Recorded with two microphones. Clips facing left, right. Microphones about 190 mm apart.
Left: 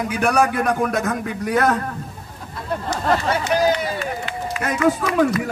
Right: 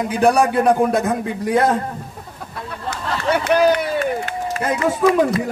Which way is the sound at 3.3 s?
60° right (ahead or behind).